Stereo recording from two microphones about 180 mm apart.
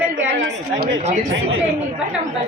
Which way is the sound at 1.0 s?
40° right (ahead or behind).